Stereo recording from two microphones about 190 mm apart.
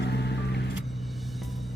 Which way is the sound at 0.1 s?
60° left (ahead or behind).